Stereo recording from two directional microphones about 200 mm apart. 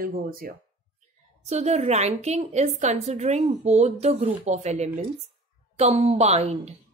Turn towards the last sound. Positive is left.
turn(degrees=-30)  # may be behind; listen again after turning